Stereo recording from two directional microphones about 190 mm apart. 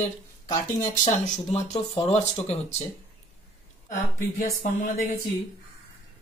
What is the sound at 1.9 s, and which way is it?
Speech, 25° left (ahead or behind).